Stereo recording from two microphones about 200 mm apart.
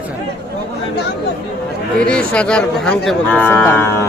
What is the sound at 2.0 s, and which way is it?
Speech, 5° left (ahead or behind).